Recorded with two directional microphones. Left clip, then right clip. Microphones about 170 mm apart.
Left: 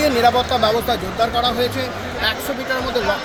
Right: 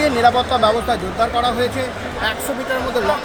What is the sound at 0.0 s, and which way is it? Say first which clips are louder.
Speech: right 1 dB; 25° left (ahead or behind).